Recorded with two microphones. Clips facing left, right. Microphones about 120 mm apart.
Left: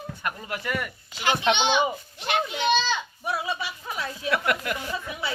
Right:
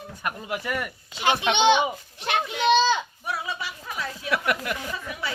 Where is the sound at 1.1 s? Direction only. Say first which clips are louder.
Right 2 dB; 25° right (ahead or behind).